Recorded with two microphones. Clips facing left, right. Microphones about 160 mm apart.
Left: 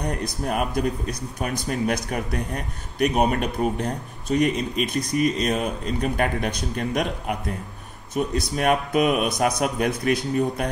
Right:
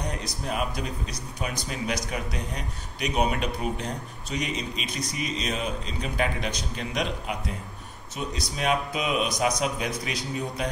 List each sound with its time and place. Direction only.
0.0 s speech: 55° left (ahead or behind)